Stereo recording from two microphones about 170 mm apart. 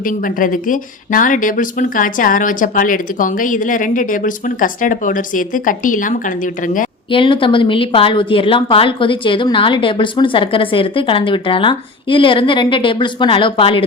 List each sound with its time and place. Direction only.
0.0 s speech: 55° left (ahead or behind)
7.1 s a woman's voice: 30° left (ahead or behind)